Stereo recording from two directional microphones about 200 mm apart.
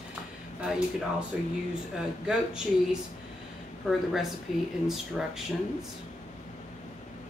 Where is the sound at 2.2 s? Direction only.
5° right (ahead or behind).